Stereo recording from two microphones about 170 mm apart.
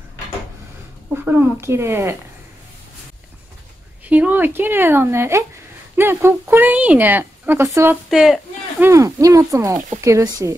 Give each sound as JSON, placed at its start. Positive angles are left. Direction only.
{"t": 1.1, "sound": "a woman's voice", "side_deg": -10}
{"t": 4.1, "sound": "a woman's voice", "side_deg": -10}
{"t": 8.1, "sound": "a woman's voice", "side_deg": 0}